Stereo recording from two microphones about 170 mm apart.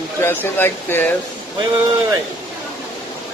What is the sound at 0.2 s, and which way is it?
Speech, 15° left (ahead or behind).